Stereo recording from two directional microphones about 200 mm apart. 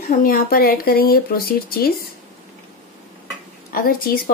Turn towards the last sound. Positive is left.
turn(degrees=45)  # may be behind; listen again after turning